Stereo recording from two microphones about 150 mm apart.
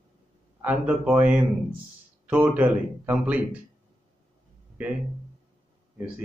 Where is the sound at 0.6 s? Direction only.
10° right (ahead or behind).